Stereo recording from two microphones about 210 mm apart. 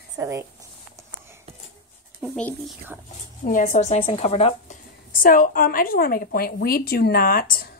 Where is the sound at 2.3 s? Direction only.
5° left (ahead or behind).